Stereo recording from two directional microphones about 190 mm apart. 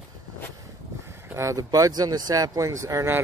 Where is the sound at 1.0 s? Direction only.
15° right (ahead or behind).